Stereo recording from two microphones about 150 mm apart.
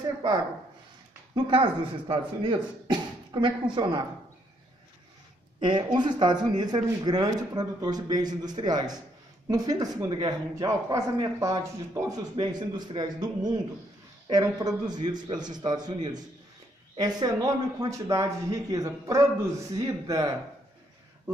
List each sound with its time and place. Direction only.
1.3 s speech: 35° right (ahead or behind)
5.6 s speech: 30° right (ahead or behind)